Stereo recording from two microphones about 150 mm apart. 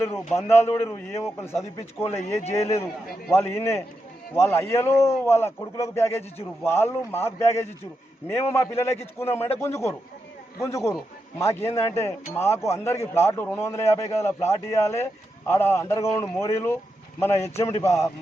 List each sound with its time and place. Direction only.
0.3 s a man's voice: 20° left (ahead or behind)